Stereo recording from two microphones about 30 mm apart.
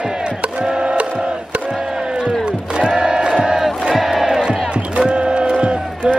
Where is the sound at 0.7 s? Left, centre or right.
Right.